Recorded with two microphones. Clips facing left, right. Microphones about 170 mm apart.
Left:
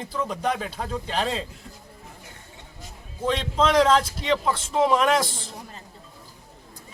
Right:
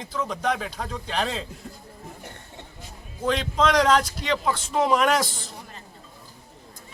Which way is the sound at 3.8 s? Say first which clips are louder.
Left 1 dB; 30° left (ahead or behind).